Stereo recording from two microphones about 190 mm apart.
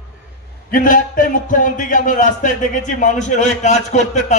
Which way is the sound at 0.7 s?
45° left (ahead or behind).